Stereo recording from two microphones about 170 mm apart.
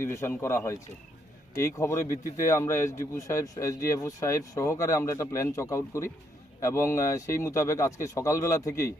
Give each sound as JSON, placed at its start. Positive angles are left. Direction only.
{"t": 0.0, "sound": "speech", "side_deg": 15}